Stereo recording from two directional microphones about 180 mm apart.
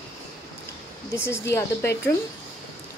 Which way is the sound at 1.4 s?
15° left (ahead or behind).